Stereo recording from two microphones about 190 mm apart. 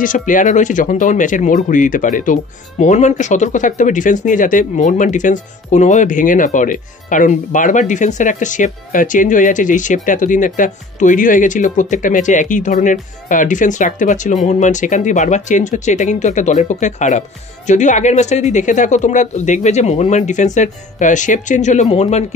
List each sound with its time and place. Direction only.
0.3 s speech: 40° left (ahead or behind)